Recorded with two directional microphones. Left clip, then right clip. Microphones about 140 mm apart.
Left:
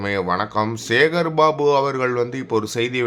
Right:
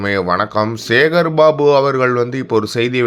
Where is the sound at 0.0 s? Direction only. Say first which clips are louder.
Right 5 dB; 25° right (ahead or behind).